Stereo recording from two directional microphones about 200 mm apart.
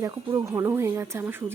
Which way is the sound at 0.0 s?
15° right (ahead or behind).